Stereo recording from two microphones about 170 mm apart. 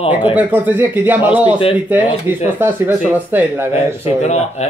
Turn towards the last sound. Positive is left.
turn(degrees=-10)  # may be behind; listen again after turning